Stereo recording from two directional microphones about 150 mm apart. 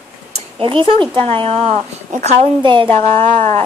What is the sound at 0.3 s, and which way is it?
Speech, 35° right (ahead or behind).